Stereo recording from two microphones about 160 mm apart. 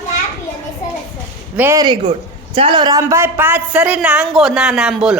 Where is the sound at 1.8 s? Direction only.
30° right (ahead or behind).